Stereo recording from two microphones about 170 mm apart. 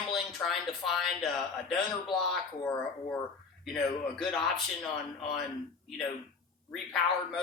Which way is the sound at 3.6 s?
Centre (ahead or behind).